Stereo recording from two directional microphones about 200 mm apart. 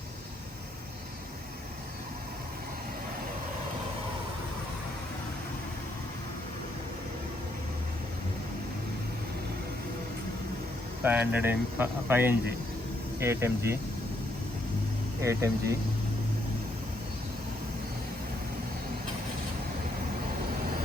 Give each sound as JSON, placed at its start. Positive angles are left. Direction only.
{"t": 11.0, "sound": "speech", "side_deg": -10}
{"t": 15.2, "sound": "speech", "side_deg": -15}